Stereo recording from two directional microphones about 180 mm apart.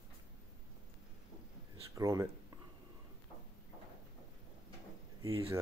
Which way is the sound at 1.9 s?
15° right (ahead or behind).